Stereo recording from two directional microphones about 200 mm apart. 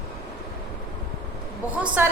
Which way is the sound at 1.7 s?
5° right (ahead or behind).